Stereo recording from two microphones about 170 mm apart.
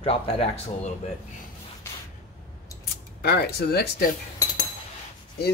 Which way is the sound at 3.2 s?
70° left (ahead or behind).